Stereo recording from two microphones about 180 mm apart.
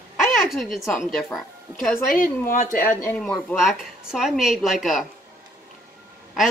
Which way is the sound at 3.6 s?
Centre (ahead or behind).